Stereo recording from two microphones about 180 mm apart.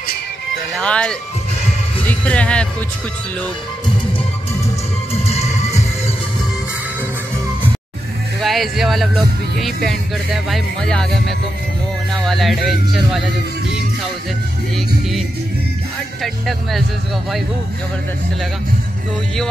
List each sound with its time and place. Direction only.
0.7 s music: 5° left (ahead or behind)
2.0 s speech: 5° left (ahead or behind)
5.1 s music: 35° left (ahead or behind)
8.4 s speech: centre (ahead or behind)
16.2 s speech: centre (ahead or behind)